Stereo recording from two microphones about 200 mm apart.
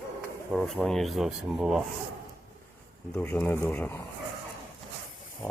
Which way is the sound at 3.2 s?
10° left (ahead or behind).